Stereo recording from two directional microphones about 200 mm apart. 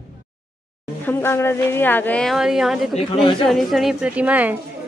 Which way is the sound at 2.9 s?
25° left (ahead or behind).